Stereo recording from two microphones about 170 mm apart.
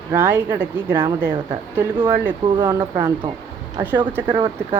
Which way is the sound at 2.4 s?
25° right (ahead or behind).